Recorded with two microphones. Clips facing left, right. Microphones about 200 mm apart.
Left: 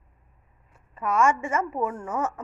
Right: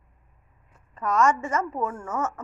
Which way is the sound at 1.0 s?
10° left (ahead or behind).